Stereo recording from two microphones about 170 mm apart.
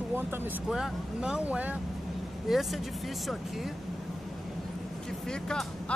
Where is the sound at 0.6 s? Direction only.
Centre (ahead or behind).